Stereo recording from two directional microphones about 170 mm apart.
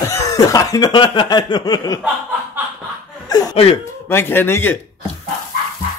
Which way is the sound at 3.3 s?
25° left (ahead or behind).